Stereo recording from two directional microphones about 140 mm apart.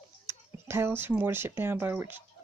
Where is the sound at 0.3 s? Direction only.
20° right (ahead or behind).